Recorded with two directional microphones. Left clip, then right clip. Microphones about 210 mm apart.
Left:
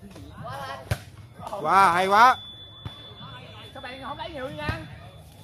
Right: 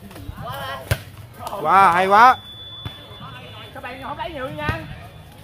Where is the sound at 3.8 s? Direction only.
40° left (ahead or behind).